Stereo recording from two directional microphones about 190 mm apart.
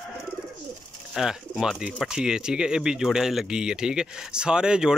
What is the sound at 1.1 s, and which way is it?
Speech, centre (ahead or behind).